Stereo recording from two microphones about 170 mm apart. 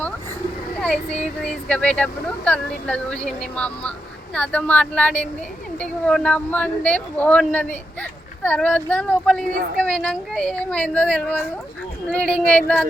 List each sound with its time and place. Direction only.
0.8 s speech: 5° left (ahead or behind)